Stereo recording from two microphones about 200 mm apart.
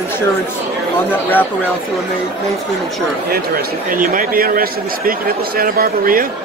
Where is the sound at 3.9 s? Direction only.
45° right (ahead or behind).